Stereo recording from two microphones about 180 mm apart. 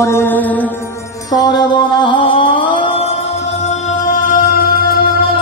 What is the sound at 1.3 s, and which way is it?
Music, 25° left (ahead or behind).